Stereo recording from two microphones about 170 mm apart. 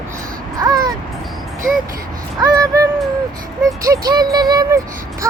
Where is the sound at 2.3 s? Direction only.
20° right (ahead or behind).